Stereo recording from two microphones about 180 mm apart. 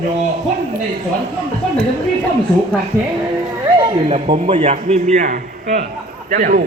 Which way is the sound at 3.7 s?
30° right (ahead or behind).